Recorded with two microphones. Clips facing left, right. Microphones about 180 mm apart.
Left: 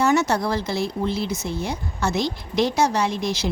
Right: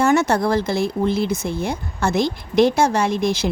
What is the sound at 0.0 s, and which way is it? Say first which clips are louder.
A woman's voice: right 3 dB; 50° right (ahead or behind).